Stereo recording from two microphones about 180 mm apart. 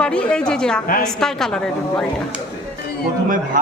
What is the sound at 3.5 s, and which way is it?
Speech, 45° right (ahead or behind).